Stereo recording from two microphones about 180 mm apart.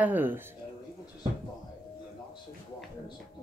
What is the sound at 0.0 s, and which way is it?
Speech, 10° right (ahead or behind).